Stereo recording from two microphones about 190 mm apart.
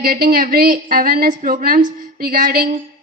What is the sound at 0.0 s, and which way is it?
A woman's voice, 50° right (ahead or behind).